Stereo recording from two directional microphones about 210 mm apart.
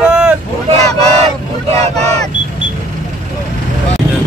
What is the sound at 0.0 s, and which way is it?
Vehicle, 10° right (ahead or behind).